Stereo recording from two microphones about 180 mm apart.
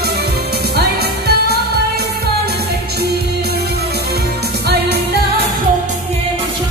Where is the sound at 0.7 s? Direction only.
65° right (ahead or behind).